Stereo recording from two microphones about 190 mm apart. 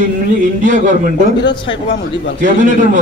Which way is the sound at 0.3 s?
40° right (ahead or behind).